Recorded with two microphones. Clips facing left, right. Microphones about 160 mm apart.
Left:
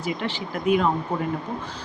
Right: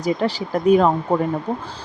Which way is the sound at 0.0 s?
40° right (ahead or behind).